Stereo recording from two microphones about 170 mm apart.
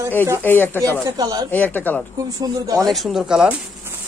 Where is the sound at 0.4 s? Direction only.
10° left (ahead or behind).